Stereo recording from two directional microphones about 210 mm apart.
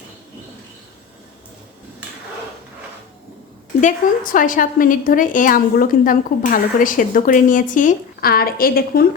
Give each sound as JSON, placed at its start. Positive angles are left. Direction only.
{"t": 3.8, "sound": "a woman's voice", "side_deg": 35}